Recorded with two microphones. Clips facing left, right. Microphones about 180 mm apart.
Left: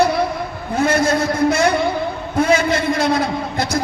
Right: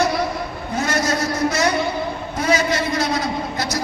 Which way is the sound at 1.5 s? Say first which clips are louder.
Left 5 dB; 55° left (ahead or behind).